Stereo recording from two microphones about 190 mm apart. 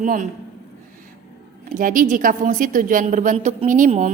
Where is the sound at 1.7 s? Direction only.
45° right (ahead or behind).